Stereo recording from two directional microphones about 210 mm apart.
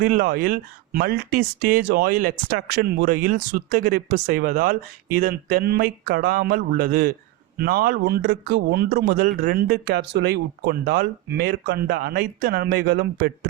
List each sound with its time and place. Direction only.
0.0 s speech: 45° right (ahead or behind)